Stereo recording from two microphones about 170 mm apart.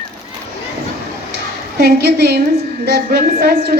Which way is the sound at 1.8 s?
65° right (ahead or behind).